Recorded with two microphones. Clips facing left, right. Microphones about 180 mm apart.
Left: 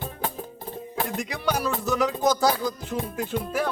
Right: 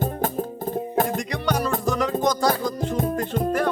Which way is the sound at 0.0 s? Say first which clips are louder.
Right 7 dB; 45° right (ahead or behind).